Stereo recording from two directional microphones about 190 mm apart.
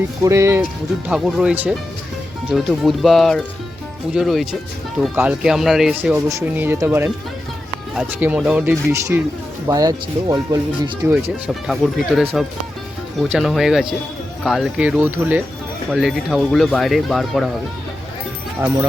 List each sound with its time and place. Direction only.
0.2 s speech: 15° right (ahead or behind)
1.0 s speech: 5° right (ahead or behind)
11.4 s speech: centre (ahead or behind)